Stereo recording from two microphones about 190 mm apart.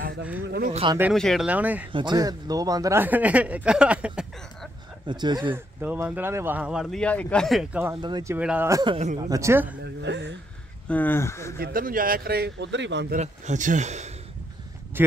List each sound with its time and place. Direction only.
0.5 s speech: 50° right (ahead or behind)
1.1 s speech: centre (ahead or behind)
1.9 s speech: 25° right (ahead or behind); by 4.3 s 5° right (ahead or behind)
5.0 s speech: 25° right (ahead or behind)
5.8 s speech: 10° right (ahead or behind)
7.9 s speech: 25° right (ahead or behind)
10.0 s speech: 65° right (ahead or behind)
10.9 s speech: 10° left (ahead or behind)
11.5 s speech: 50° right (ahead or behind); by 13.1 s 70° right (ahead or behind)
13.1 s a man's voice: 40° right (ahead or behind)
15.0 s speech: 10° right (ahead or behind)